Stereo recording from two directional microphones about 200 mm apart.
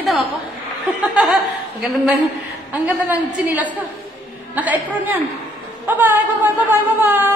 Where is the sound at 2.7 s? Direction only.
10° right (ahead or behind).